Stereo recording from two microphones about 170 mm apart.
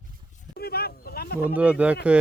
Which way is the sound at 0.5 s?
70° left (ahead or behind).